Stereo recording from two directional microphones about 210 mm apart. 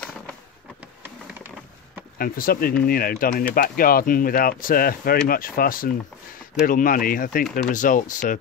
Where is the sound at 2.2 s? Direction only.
45° left (ahead or behind).